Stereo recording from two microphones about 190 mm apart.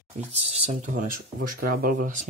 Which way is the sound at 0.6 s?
40° right (ahead or behind).